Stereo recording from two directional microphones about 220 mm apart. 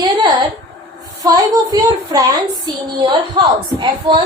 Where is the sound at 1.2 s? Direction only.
15° right (ahead or behind).